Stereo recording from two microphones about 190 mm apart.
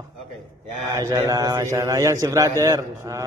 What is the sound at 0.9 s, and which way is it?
A man's voice, 15° right (ahead or behind).